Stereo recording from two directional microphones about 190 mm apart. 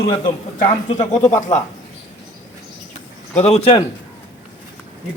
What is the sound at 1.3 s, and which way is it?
Speech, 40° left (ahead or behind).